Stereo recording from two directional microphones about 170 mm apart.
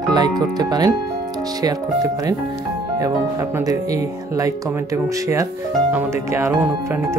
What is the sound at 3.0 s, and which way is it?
Speech, 20° right (ahead or behind).